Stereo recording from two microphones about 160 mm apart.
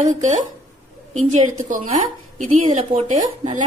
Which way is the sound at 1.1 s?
50° right (ahead or behind).